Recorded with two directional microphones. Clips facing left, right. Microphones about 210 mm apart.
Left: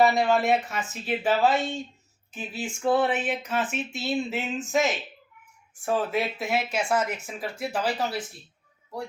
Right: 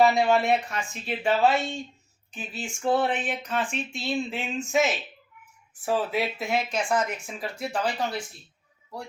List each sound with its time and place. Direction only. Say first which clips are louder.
0.0 s speech: right 1 dB; centre (ahead or behind)
1.5 s speech: left 1 dB; 20° left (ahead or behind)
2.8 s speech: left 1 dB; 5° left (ahead or behind)